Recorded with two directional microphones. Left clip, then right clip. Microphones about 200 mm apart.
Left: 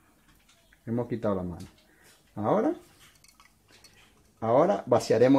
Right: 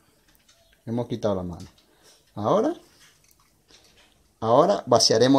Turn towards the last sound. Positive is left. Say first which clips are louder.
# right 4 dB
turn(degrees=-10)  # may be behind; listen again after turning